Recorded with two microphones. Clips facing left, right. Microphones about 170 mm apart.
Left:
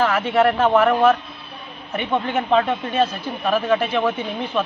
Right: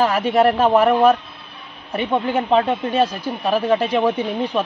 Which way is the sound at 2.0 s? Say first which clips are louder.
Right 2 dB; 30° right (ahead or behind).